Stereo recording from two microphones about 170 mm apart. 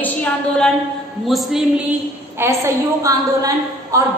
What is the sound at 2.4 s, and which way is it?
A woman's voice, 15° right (ahead or behind).